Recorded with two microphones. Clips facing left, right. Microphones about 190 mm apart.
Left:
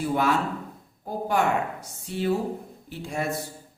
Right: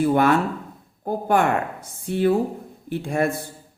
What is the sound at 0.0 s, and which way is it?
A man's voice, 55° right (ahead or behind).